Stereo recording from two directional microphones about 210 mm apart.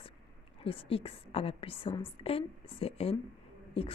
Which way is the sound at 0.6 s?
25° left (ahead or behind).